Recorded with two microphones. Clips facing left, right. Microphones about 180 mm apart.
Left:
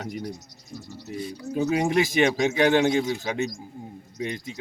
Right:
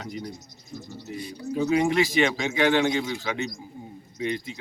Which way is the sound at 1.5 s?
45° left (ahead or behind).